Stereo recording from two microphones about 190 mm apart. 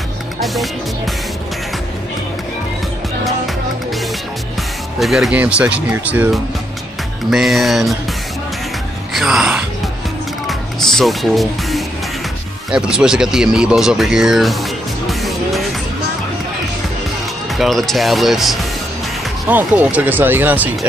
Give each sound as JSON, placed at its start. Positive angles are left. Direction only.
{"t": 0.4, "sound": "speech", "side_deg": 0}
{"t": 4.9, "sound": "speech", "side_deg": 0}
{"t": 9.1, "sound": "speech", "side_deg": 0}
{"t": 17.6, "sound": "speech", "side_deg": 0}